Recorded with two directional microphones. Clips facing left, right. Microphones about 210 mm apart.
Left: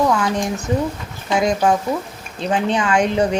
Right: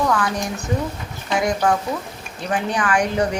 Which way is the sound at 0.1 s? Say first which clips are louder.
Left 3 dB; 20° left (ahead or behind).